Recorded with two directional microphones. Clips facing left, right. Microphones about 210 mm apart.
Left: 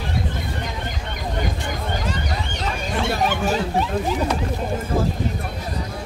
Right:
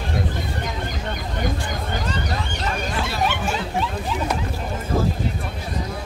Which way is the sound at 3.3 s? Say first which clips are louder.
Left 3 dB; 40° left (ahead or behind).